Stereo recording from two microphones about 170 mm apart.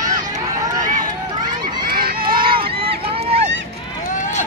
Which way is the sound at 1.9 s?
60° right (ahead or behind).